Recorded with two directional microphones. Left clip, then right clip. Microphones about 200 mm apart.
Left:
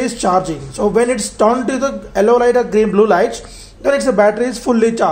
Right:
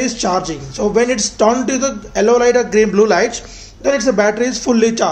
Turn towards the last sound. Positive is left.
turn(degrees=5)  # may be behind; listen again after turning